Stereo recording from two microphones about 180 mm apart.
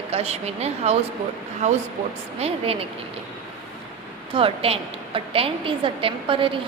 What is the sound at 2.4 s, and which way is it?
Speech, 35° right (ahead or behind).